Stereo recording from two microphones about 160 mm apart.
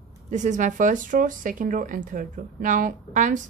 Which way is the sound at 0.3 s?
50° right (ahead or behind).